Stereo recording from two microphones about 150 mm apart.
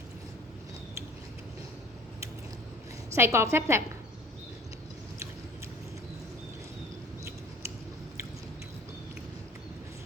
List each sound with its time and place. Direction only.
3.2 s a woman's voice: 20° right (ahead or behind)